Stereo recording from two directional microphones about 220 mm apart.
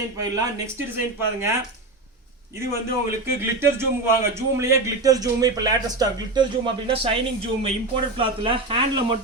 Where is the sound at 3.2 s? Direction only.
10° right (ahead or behind).